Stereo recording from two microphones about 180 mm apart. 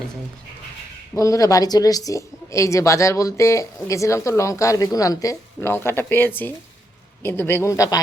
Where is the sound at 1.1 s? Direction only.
20° left (ahead or behind).